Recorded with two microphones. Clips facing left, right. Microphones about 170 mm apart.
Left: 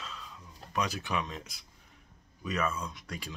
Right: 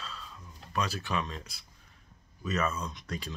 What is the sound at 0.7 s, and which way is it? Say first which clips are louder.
Speech: even; 15° left (ahead or behind).